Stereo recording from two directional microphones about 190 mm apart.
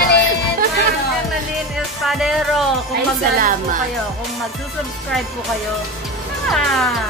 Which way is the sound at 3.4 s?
45° right (ahead or behind).